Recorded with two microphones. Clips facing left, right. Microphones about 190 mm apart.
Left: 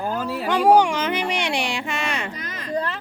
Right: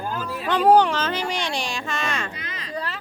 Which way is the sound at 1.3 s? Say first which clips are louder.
Left 3 dB; 60° left (ahead or behind).